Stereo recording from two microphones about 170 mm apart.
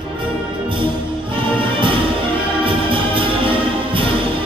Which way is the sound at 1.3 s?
30° right (ahead or behind).